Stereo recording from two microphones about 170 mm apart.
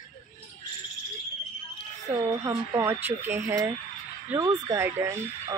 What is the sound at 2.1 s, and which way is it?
Speech, 20° right (ahead or behind).